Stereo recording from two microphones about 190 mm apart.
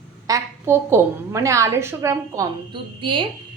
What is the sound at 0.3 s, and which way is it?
A woman's voice, 15° right (ahead or behind).